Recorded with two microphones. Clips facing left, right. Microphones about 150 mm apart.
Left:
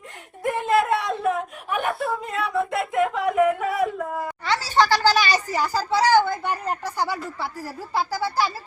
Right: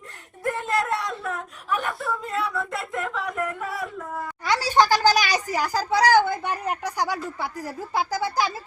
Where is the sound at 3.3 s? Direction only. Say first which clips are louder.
Left 9 dB; 85° left.